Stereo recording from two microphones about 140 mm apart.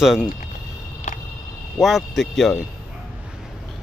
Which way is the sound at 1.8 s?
Centre (ahead or behind).